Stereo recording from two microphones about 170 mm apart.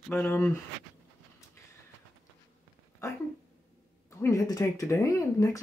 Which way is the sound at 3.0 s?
20° left (ahead or behind).